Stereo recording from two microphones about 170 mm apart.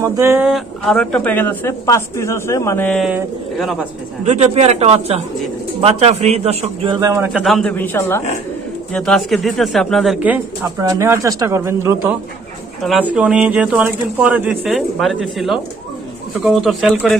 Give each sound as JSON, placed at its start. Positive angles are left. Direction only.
{"t": 0.0, "sound": "speech", "side_deg": -15}
{"t": 0.5, "sound": "speech", "side_deg": 0}
{"t": 2.9, "sound": "speech", "side_deg": 0}
{"t": 4.2, "sound": "a man's voice", "side_deg": -40}
{"t": 7.4, "sound": "speech", "side_deg": 0}
{"t": 7.7, "sound": "speech", "side_deg": 10}
{"t": 10.8, "sound": "speech", "side_deg": -20}
{"t": 12.8, "sound": "speech", "side_deg": -5}